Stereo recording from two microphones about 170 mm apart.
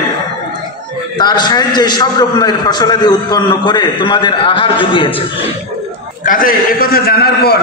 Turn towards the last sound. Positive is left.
turn(degrees=70)  # may be behind; listen again after turning